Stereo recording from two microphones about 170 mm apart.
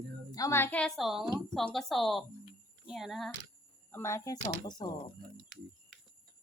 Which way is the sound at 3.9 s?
15° left (ahead or behind).